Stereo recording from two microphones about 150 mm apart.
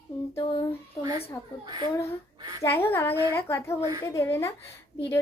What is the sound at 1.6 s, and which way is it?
A child's voice, 30° right (ahead or behind).